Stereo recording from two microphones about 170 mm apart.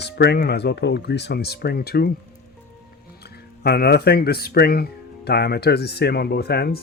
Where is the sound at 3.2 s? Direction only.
70° left (ahead or behind).